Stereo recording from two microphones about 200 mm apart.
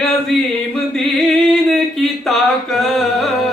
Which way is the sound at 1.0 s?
Centre (ahead or behind).